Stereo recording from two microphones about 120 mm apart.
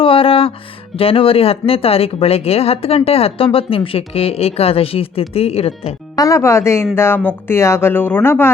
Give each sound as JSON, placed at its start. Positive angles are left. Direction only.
{"t": 0.0, "sound": "music", "side_deg": 50}
{"t": 0.9, "sound": "speech", "side_deg": 50}
{"t": 6.1, "sound": "speech", "side_deg": 30}